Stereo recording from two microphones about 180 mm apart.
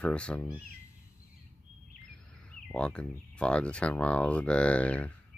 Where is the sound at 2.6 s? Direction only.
5° left (ahead or behind).